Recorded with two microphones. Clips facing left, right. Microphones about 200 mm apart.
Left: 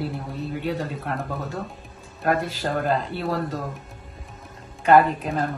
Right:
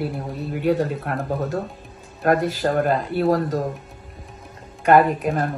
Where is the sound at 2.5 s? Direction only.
50° right (ahead or behind).